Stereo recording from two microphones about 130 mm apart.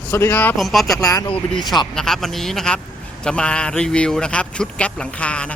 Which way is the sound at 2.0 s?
5° left (ahead or behind).